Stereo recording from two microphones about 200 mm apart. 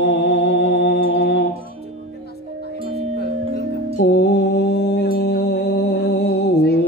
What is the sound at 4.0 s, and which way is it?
Mantra, 55° left (ahead or behind).